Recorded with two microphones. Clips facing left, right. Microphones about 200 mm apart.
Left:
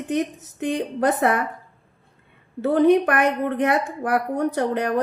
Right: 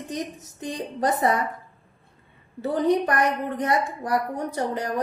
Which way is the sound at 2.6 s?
65° left (ahead or behind).